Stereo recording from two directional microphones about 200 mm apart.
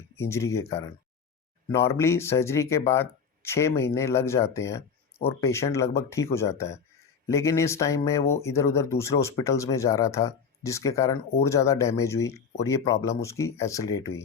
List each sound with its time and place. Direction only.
0.2 s speech: 15° left (ahead or behind)